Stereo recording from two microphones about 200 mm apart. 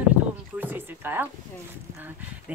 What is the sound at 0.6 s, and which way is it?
Speech, 10° right (ahead or behind).